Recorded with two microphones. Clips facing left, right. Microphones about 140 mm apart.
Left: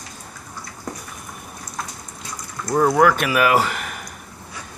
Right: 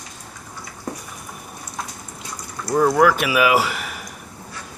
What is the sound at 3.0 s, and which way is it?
Speech, 5° right (ahead or behind).